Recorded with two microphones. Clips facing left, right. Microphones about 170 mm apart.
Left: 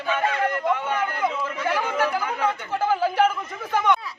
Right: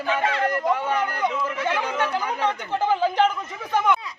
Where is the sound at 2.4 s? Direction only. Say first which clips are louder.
Even; 20° right (ahead or behind).